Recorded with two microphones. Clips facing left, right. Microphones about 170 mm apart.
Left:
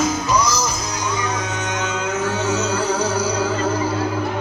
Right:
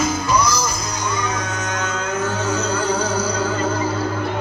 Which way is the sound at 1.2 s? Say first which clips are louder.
Even; 5° left (ahead or behind).